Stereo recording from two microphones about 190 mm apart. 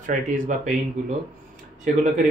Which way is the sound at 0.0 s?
45° right (ahead or behind).